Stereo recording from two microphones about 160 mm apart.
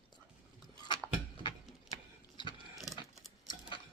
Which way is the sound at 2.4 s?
30° left (ahead or behind).